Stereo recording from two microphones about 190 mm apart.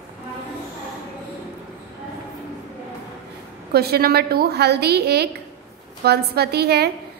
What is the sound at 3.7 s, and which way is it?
A woman's voice, 55° right (ahead or behind).